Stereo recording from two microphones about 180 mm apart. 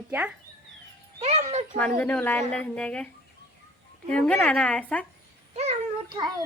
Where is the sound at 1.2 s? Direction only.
35° right (ahead or behind).